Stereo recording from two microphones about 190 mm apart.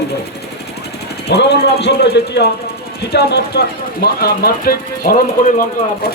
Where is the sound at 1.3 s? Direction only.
60° left (ahead or behind).